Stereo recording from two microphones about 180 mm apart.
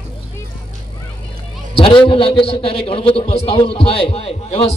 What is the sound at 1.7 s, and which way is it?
A man's voice, 30° left (ahead or behind).